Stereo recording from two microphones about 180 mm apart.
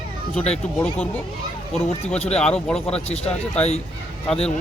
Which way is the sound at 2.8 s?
35° left (ahead or behind).